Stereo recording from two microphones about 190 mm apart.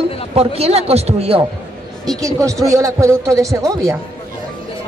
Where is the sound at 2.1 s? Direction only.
15° right (ahead or behind).